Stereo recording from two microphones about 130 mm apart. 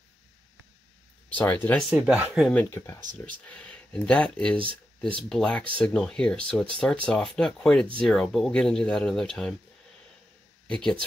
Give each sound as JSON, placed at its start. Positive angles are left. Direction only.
{"t": 1.3, "sound": "speech", "side_deg": 15}
{"t": 1.8, "sound": "speech", "side_deg": -5}
{"t": 2.5, "sound": "speech", "side_deg": 20}
{"t": 3.0, "sound": "speech", "side_deg": -80}
{"t": 3.4, "sound": "speech", "side_deg": 10}
{"t": 4.6, "sound": "speech", "side_deg": -40}
{"t": 5.3, "sound": "speech", "side_deg": 5}
{"t": 10.7, "sound": "speech", "side_deg": 5}